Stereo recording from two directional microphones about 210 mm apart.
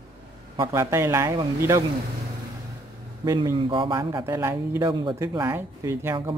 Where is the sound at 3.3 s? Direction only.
20° right (ahead or behind).